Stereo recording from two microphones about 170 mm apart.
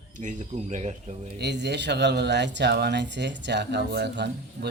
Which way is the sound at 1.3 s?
85° right.